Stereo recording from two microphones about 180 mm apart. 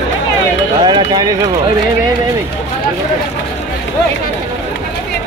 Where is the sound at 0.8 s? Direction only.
25° right (ahead or behind).